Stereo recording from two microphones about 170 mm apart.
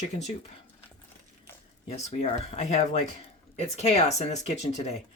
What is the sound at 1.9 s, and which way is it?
Speech, 40° left (ahead or behind).